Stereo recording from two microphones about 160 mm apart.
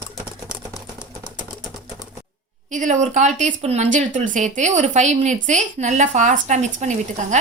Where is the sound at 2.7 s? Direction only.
50° right (ahead or behind).